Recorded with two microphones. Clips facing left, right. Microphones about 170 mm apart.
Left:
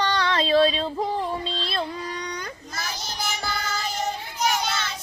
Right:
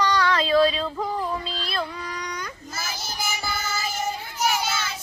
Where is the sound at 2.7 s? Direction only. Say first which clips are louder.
Even; 5° right (ahead or behind).